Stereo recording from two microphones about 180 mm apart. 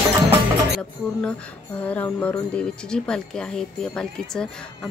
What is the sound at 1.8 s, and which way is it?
Speech, 10° left (ahead or behind).